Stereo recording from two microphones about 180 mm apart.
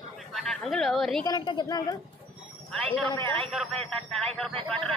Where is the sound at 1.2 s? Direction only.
25° left (ahead or behind).